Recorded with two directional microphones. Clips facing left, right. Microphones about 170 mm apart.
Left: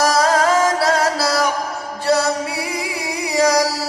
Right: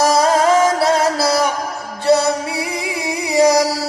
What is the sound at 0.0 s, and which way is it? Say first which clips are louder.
Music: right 2 dB; 25° right (ahead or behind).